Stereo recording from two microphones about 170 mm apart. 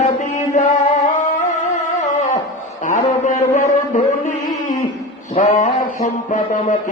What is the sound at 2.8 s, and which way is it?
A man's voice, 45° left (ahead or behind).